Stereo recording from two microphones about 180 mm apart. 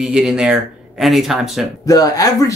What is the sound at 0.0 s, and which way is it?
Speech, 5° right (ahead or behind).